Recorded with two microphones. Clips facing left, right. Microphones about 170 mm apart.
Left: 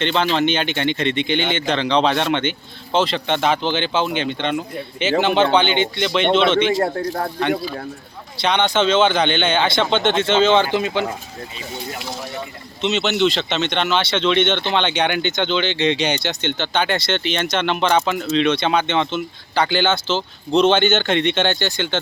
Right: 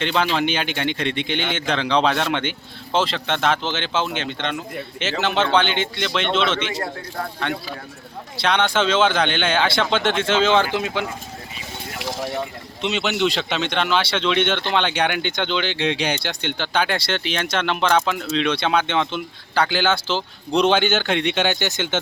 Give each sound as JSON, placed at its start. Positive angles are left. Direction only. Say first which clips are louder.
{"t": 0.0, "sound": "speech", "louder": "left 2 dB", "side_deg": -5}
{"t": 8.4, "sound": "speech", "louder": "left 2 dB", "side_deg": -5}
{"t": 12.8, "sound": "speech", "louder": "left 3 dB", "side_deg": -5}